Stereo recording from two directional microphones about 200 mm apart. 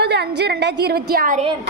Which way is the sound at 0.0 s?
55° right (ahead or behind).